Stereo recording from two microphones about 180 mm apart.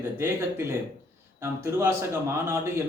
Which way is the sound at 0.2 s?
15° right (ahead or behind).